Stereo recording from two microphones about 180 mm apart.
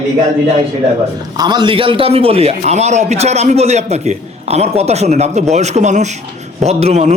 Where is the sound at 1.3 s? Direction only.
25° right (ahead or behind).